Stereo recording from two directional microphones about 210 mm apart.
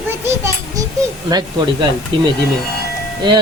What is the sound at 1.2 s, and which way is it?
Speech, 20° right (ahead or behind).